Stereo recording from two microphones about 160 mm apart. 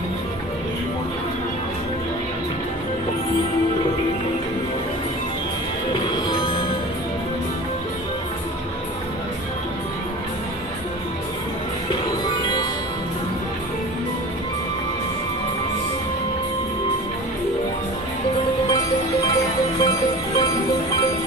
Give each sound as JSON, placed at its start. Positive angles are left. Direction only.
{"t": 6.0, "sound": "music", "side_deg": 25}
{"t": 12.4, "sound": "music", "side_deg": 30}
{"t": 19.8, "sound": "music", "side_deg": 25}